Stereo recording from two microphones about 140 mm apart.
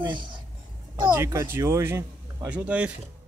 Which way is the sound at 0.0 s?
35° right (ahead or behind).